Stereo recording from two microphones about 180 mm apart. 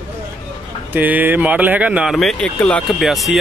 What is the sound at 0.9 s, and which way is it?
Speech, 10° right (ahead or behind).